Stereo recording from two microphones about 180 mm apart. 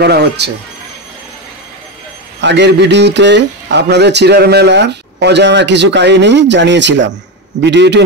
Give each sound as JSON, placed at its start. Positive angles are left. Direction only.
{"t": 0.0, "sound": "speech", "side_deg": -65}
{"t": 2.4, "sound": "speech", "side_deg": -75}